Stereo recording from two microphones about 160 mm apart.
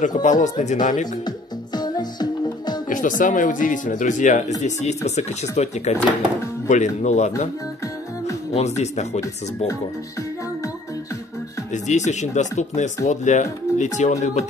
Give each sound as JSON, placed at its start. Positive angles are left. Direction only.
{"t": 0.0, "sound": "speech", "side_deg": 50}
{"t": 1.2, "sound": "music", "side_deg": 25}
{"t": 2.9, "sound": "speech", "side_deg": 55}
{"t": 8.5, "sound": "speech", "side_deg": 45}
{"t": 11.7, "sound": "speech", "side_deg": 45}